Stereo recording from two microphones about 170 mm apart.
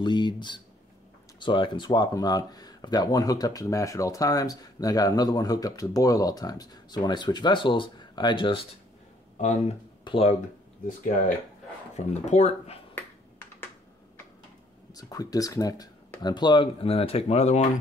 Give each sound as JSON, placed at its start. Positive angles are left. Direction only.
{"t": 0.0, "sound": "speech", "side_deg": 25}
{"t": 9.4, "sound": "speech", "side_deg": 45}
{"t": 10.0, "sound": "speech", "side_deg": 35}
{"t": 12.0, "sound": "speech", "side_deg": 45}
{"t": 15.0, "sound": "speech", "side_deg": 20}